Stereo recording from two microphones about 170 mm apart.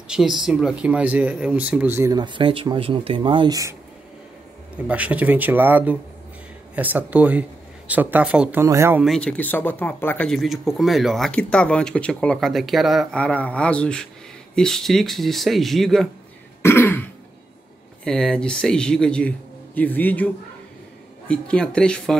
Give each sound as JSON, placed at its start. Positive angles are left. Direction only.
{"t": 0.1, "sound": "speech", "side_deg": 0}
{"t": 2.1, "sound": "speech", "side_deg": -30}
{"t": 4.8, "sound": "speech", "side_deg": -10}
{"t": 9.0, "sound": "speech", "side_deg": 5}
{"t": 16.6, "sound": "throat clearing", "side_deg": 15}
{"t": 18.0, "sound": "speech", "side_deg": 5}
{"t": 21.3, "sound": "speech", "side_deg": 5}